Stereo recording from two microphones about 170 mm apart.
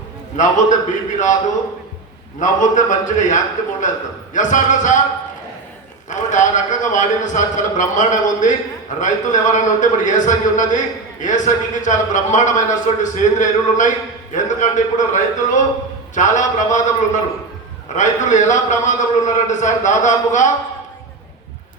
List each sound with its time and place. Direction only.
0.3 s a man's voice: 45° left (ahead or behind)
2.4 s a man's voice: 45° left (ahead or behind)
6.1 s a man's voice: 45° left (ahead or behind)
17.9 s a man's voice: 45° left (ahead or behind)